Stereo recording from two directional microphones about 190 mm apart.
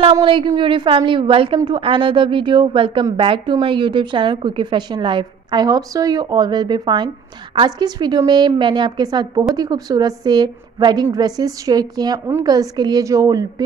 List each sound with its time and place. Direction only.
0.0 s a woman's voice: 30° right (ahead or behind)